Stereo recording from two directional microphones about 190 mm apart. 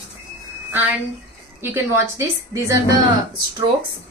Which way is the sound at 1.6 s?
15° right (ahead or behind).